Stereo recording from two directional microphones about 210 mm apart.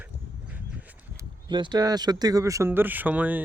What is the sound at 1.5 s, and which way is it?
Speech, 20° right (ahead or behind).